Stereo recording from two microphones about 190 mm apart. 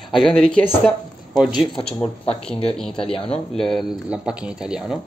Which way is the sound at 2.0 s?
30° left (ahead or behind).